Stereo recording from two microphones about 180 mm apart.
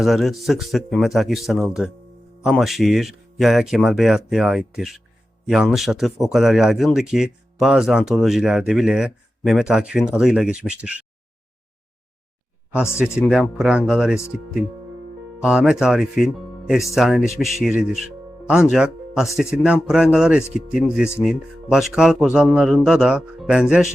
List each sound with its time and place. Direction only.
0.0 s speech: centre (ahead or behind)
13.1 s speech: 5° right (ahead or behind)
15.4 s speech: 5° right (ahead or behind)